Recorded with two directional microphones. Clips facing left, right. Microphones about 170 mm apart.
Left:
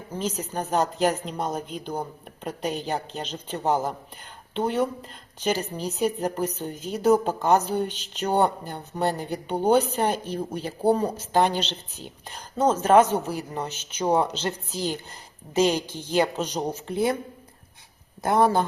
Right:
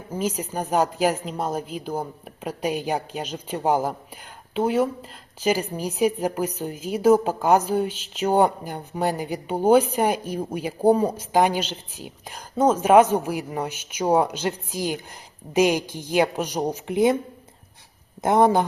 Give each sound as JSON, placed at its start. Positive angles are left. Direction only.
{"t": 0.1, "sound": "a woman's voice", "side_deg": -10}
{"t": 18.2, "sound": "speech", "side_deg": -20}